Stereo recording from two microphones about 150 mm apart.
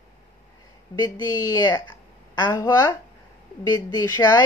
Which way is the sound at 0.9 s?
25° left (ahead or behind).